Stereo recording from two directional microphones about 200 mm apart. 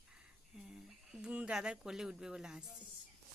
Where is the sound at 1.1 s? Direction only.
5° right (ahead or behind).